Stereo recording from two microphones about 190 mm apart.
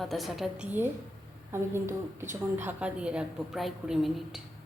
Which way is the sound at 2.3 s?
10° right (ahead or behind).